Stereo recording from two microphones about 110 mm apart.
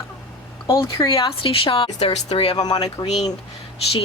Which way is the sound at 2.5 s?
40° left (ahead or behind).